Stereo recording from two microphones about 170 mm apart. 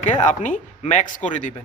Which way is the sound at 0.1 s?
45° left (ahead or behind).